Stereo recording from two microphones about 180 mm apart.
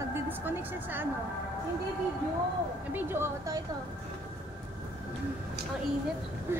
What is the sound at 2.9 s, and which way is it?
Speech, 10° right (ahead or behind).